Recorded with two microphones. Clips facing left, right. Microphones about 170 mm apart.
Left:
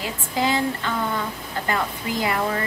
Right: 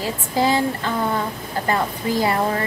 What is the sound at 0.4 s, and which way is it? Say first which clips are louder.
A woman's voice: right 3 dB; 35° right (ahead or behind).